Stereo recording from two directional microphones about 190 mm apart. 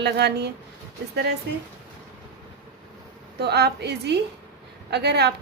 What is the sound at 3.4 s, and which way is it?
A woman's voice, 60° right (ahead or behind).